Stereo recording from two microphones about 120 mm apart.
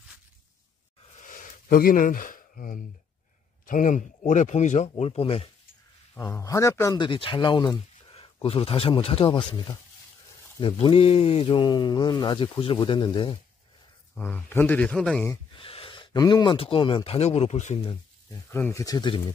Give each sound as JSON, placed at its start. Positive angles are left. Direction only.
{"t": 1.1, "sound": "a sound", "side_deg": 90}
{"t": 2.0, "sound": "speech", "side_deg": 90}
{"t": 3.6, "sound": "speech", "side_deg": 90}
{"t": 6.1, "sound": "speech", "side_deg": 25}
{"t": 7.0, "sound": "speech", "side_deg": 45}
{"t": 8.1, "sound": "speech", "side_deg": 55}
{"t": 10.6, "sound": "a man's voice", "side_deg": 55}
{"t": 14.1, "sound": "speech", "side_deg": 15}
{"t": 15.5, "sound": "a sound", "side_deg": 50}
{"t": 16.5, "sound": "speech", "side_deg": 50}
{"t": 18.3, "sound": "speech", "side_deg": 20}
{"t": 18.9, "sound": "speech", "side_deg": 40}